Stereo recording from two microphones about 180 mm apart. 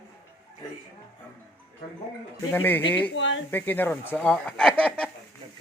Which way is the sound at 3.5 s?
10° left (ahead or behind).